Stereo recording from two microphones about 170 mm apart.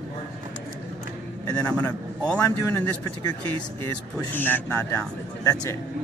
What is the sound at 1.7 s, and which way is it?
A man's voice, 10° left (ahead or behind).